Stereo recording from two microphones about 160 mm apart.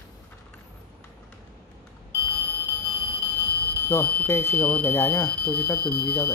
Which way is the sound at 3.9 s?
10° left (ahead or behind).